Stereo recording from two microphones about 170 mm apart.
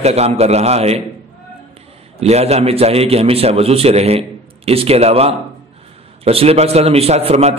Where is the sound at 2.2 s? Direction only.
40° right (ahead or behind).